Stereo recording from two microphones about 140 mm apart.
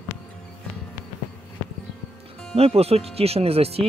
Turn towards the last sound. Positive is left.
turn(degrees=-45)  # may be behind; listen again after turning